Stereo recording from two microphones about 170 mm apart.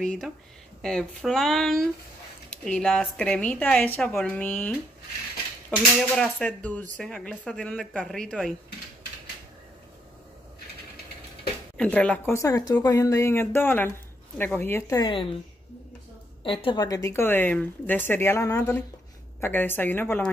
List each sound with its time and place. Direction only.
0.0 s speech: 5° left (ahead or behind)
5.9 s speech: 5° left (ahead or behind)
11.7 s speech: 5° left (ahead or behind); by 15.2 s 25° left (ahead or behind)
16.4 s speech: 30° left (ahead or behind); by 20.2 s 10° left (ahead or behind)